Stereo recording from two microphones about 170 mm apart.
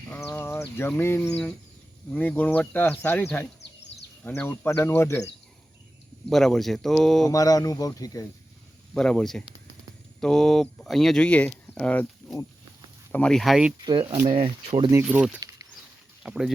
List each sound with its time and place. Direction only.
0.1 s a sound: 15° left (ahead or behind)
2.0 s speech: 10° left (ahead or behind)
6.3 s speech: centre (ahead or behind)
7.3 s speech: 20° left (ahead or behind)
9.0 s speech: 5° left (ahead or behind)
13.8 s speech: 30° right (ahead or behind)
14.9 s speech: 10° right (ahead or behind)